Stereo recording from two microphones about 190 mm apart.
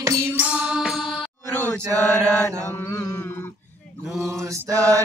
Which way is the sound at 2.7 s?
15° left (ahead or behind).